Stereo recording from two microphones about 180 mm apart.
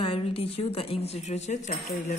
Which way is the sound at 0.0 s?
30° left (ahead or behind).